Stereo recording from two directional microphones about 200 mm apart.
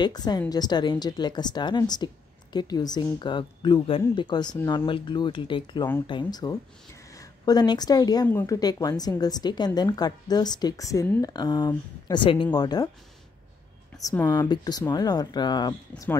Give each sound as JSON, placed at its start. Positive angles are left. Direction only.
{"t": 0.0, "sound": "speech", "side_deg": 20}
{"t": 14.0, "sound": "speech", "side_deg": 15}